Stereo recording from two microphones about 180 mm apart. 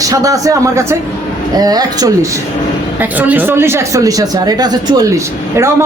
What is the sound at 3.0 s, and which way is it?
Speech, 10° right (ahead or behind).